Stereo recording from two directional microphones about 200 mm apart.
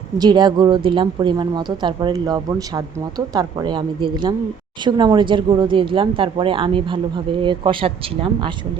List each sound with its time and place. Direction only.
0.2 s speech: 20° right (ahead or behind)